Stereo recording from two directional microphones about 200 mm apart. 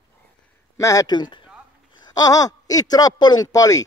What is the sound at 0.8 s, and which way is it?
Speech, 15° left (ahead or behind).